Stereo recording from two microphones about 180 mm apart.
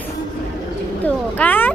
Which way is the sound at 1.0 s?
10° left (ahead or behind).